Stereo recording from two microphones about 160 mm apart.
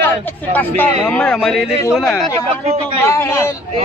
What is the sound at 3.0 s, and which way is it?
Speech, 15° left (ahead or behind).